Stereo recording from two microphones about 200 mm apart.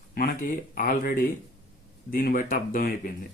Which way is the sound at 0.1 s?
45° left (ahead or behind).